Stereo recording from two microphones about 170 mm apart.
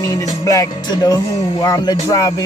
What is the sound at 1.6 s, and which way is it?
Speech, 20° left (ahead or behind).